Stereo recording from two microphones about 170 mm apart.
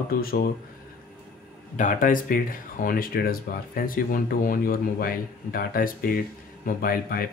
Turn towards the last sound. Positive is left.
turn(degrees=60)  # may be behind; listen again after turning